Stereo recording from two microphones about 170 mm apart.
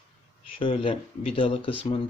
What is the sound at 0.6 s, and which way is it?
Speech, 30° left (ahead or behind).